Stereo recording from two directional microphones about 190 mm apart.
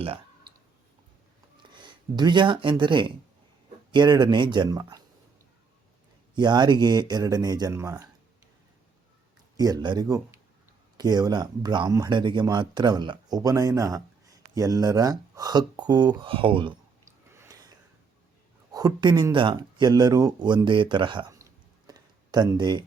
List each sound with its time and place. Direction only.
1.5 s speech: 25° right (ahead or behind)
6.3 s speech: 20° right (ahead or behind)
9.6 s speech: 20° right (ahead or behind)
17.3 s a sound: 15° right (ahead or behind)
18.7 s speech: 20° right (ahead or behind)
21.8 s a sound: 20° right (ahead or behind)